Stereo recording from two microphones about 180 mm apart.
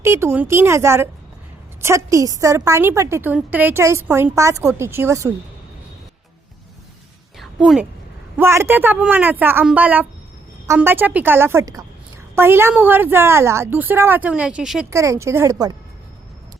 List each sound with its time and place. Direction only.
0.0 s a woman's voice: 15° right (ahead or behind)
7.3 s a sound: 5° right (ahead or behind)
8.4 s a woman's voice: 15° right (ahead or behind)
14.8 s a woman's voice: 15° right (ahead or behind)